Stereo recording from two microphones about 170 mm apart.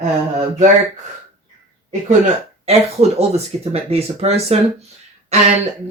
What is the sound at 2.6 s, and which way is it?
Speech, 35° right (ahead or behind).